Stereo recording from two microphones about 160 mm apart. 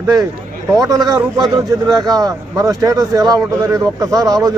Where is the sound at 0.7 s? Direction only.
25° right (ahead or behind).